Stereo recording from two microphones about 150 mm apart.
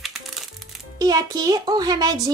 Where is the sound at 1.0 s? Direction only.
25° right (ahead or behind).